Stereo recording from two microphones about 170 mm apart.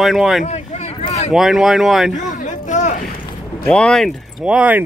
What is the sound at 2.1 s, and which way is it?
Vehicle, 45° left (ahead or behind).